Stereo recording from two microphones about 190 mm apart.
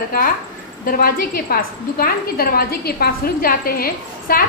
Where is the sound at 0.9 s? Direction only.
50° left (ahead or behind).